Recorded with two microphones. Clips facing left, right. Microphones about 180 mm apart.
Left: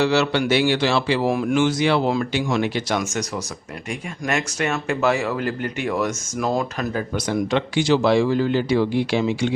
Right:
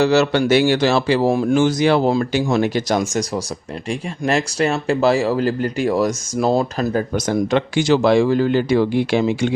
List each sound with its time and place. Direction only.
0.0 s speech: 40° right (ahead or behind)
1.3 s speech: 30° right (ahead or behind); by 9.5 s 50° right (ahead or behind)